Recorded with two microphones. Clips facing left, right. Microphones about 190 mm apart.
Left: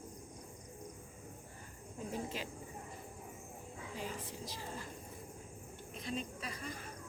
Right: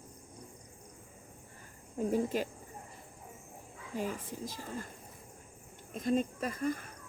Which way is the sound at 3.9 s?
50° right (ahead or behind).